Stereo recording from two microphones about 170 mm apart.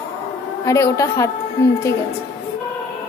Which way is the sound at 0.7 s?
15° left (ahead or behind).